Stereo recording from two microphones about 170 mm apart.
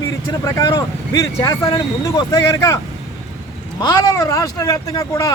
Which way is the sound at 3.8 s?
20° left (ahead or behind).